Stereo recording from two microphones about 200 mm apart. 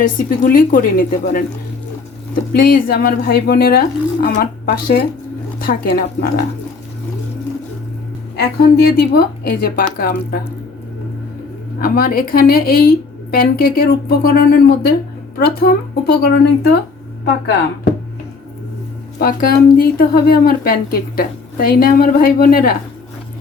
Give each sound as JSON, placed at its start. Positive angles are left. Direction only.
{"t": 0.0, "sound": "speech", "side_deg": 45}
{"t": 8.4, "sound": "speech", "side_deg": 55}
{"t": 11.8, "sound": "speech", "side_deg": 45}
{"t": 19.2, "sound": "speech", "side_deg": 45}